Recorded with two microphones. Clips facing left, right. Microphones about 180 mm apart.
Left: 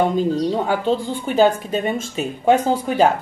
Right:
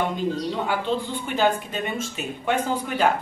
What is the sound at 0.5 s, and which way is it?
Speech, 40° left (ahead or behind).